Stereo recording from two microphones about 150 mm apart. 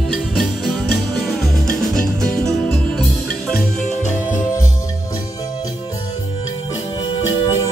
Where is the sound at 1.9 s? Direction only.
5° left (ahead or behind).